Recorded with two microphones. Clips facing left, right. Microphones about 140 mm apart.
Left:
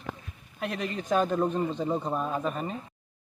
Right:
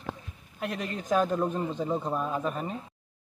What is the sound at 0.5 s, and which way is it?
Speech, centre (ahead or behind).